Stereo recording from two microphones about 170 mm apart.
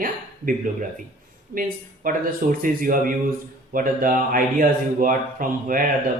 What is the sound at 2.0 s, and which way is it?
Speech, 55° right (ahead or behind).